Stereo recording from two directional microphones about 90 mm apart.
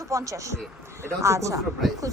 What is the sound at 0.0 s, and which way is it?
Speech, 35° right (ahead or behind).